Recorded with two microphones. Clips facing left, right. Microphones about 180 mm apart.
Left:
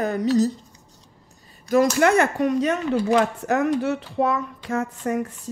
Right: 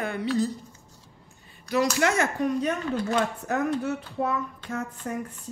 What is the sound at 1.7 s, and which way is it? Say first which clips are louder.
Speech: left 6 dB; 50° left (ahead or behind).